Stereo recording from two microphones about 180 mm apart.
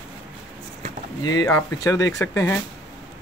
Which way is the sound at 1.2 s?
20° left (ahead or behind).